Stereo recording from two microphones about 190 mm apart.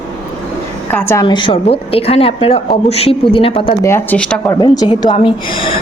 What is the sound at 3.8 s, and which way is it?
Speech, 10° left (ahead or behind).